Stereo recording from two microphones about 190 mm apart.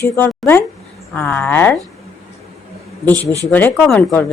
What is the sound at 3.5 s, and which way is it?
Speech, 10° left (ahead or behind).